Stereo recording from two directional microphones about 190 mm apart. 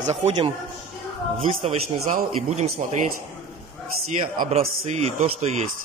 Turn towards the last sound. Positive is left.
turn(degrees=-35)  # may be behind; listen again after turning